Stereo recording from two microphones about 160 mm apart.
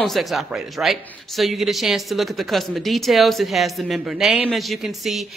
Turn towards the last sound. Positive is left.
turn(degrees=0)  # may be behind; listen again after turning